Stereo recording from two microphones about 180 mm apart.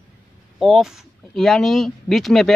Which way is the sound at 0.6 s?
Centre (ahead or behind).